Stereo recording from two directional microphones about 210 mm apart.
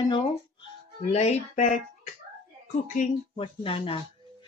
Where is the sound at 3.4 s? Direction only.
25° left (ahead or behind).